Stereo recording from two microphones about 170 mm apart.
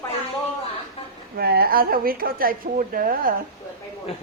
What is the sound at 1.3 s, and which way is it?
A woman's voice, 65° right (ahead or behind).